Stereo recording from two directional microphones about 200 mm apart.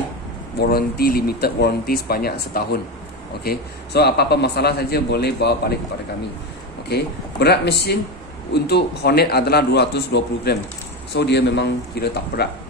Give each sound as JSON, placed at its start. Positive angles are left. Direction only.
{"t": 0.6, "sound": "a man's voice", "side_deg": 50}
{"t": 6.9, "sound": "a man's voice", "side_deg": 55}